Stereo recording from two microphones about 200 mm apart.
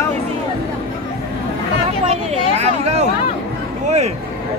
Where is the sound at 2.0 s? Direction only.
30° right (ahead or behind).